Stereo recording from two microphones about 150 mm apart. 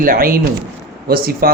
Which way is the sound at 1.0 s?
90° right.